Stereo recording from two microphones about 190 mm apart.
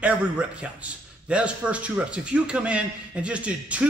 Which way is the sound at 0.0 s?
5° right (ahead or behind).